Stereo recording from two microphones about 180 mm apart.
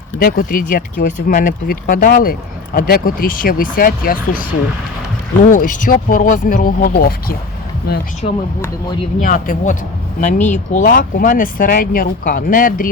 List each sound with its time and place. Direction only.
0.2 s speech: 55° left (ahead or behind)
5.5 s speech: 50° left (ahead or behind)
8.2 s speech: 30° left (ahead or behind)
9.2 s speech: 45° left (ahead or behind)